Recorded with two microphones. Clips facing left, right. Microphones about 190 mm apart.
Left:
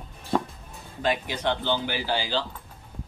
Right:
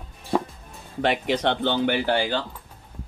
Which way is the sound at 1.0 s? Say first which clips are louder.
Right 4 dB; 75° right (ahead or behind).